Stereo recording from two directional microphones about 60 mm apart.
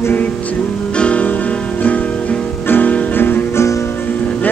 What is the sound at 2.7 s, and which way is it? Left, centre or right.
Music, left.